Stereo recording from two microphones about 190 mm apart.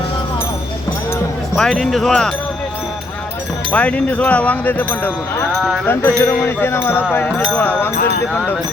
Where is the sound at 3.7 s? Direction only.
5° left (ahead or behind).